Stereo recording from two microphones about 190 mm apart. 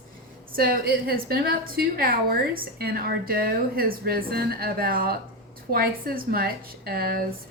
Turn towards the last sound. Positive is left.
turn(degrees=-50)  # may be behind; listen again after turning